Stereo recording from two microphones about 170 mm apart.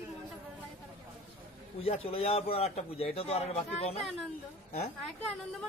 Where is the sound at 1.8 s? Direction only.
35° left (ahead or behind).